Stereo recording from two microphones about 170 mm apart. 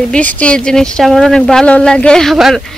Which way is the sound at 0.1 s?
10° left (ahead or behind).